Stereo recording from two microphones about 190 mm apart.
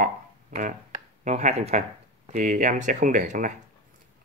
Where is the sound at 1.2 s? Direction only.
35° right (ahead or behind).